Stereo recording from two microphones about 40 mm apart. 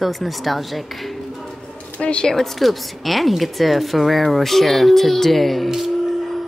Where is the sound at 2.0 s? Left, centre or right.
Left.